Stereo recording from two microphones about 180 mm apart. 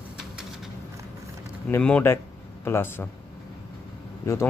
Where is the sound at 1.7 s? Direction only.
10° left (ahead or behind).